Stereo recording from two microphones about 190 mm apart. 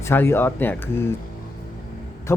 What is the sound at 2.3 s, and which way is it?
Speech, 15° left (ahead or behind).